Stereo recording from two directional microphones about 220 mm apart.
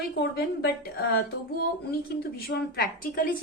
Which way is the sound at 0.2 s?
45° left (ahead or behind).